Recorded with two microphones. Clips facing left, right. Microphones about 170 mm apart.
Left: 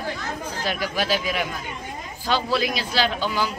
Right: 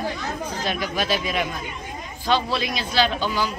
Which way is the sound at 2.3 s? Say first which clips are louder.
Right 2 dB; 15° right (ahead or behind).